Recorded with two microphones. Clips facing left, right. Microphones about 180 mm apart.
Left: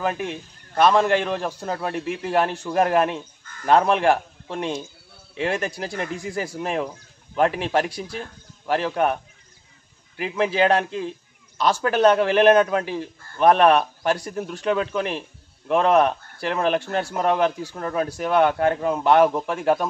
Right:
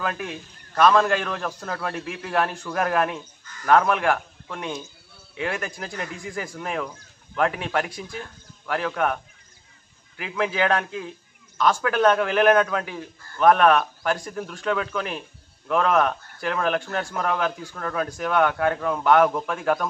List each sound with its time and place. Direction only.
0.7 s a man's voice: 25° left (ahead or behind)
10.2 s a man's voice: 25° left (ahead or behind)